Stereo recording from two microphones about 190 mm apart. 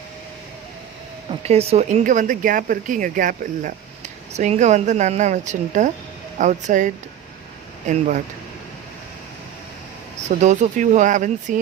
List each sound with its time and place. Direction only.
1.3 s speech: 30° right (ahead or behind)
10.2 s speech: 40° right (ahead or behind)